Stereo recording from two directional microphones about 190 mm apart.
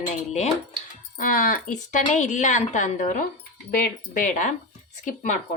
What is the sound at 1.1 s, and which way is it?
Speech, 45° left (ahead or behind).